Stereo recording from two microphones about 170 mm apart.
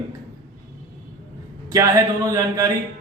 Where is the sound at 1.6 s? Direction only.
20° right (ahead or behind).